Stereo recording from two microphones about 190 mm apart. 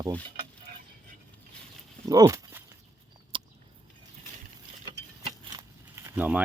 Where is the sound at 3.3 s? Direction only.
25° right (ahead or behind).